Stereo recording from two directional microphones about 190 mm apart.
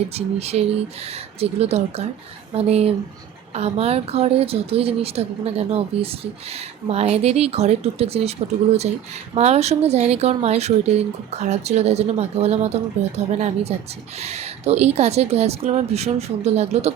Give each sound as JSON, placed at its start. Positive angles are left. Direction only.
{"t": 0.1, "sound": "speech", "side_deg": -35}
{"t": 9.3, "sound": "speech", "side_deg": -35}